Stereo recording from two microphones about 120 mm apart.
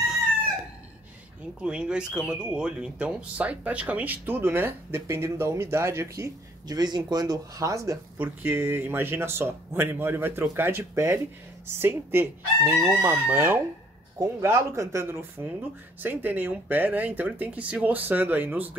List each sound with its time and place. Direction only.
1.6 s speech: 10° right (ahead or behind)